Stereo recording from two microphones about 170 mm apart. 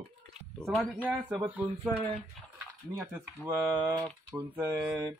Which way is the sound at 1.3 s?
5° right (ahead or behind).